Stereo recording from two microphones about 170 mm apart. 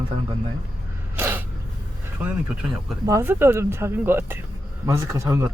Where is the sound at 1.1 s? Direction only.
15° right (ahead or behind).